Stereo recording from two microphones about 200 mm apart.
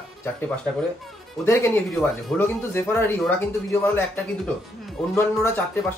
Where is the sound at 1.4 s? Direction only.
15° left (ahead or behind).